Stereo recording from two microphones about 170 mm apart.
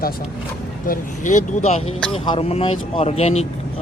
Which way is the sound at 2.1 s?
35° left (ahead or behind).